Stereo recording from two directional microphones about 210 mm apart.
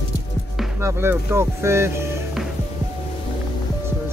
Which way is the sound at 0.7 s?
10° right (ahead or behind).